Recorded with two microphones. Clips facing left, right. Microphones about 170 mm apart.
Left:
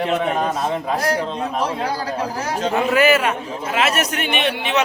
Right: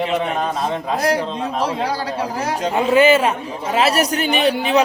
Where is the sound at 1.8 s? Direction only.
35° right (ahead or behind).